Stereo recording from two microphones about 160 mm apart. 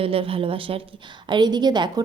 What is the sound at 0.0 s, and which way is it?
A woman's voice, 35° right (ahead or behind).